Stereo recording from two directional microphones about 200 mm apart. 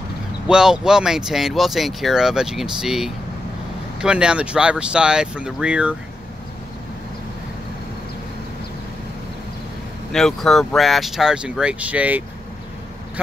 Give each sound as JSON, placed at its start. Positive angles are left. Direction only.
{"t": 0.5, "sound": "speech", "side_deg": -5}
{"t": 10.1, "sound": "speech", "side_deg": 0}